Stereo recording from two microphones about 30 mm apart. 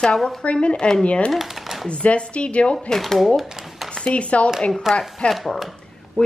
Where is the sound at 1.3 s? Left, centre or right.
Centre.